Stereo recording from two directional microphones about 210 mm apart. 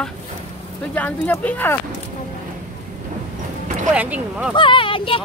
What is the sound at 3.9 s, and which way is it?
Speech, 5° right (ahead or behind).